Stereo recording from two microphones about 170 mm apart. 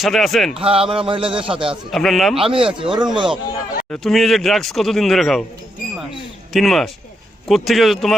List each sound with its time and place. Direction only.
0.0 s speech: centre (ahead or behind)
0.6 s speech: 35° right (ahead or behind)
1.7 s speech: centre (ahead or behind)
2.3 s speech: 30° right (ahead or behind)
3.9 s speech: centre (ahead or behind)
6.5 s speech: centre (ahead or behind)